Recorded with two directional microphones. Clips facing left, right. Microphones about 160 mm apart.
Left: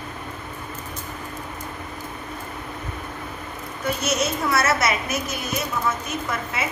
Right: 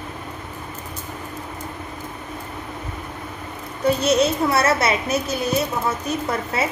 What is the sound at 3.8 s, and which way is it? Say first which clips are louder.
A child's voice: right 7 dB; 30° right (ahead or behind).